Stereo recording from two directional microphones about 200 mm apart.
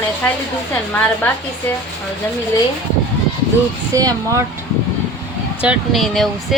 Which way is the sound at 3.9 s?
15° right (ahead or behind).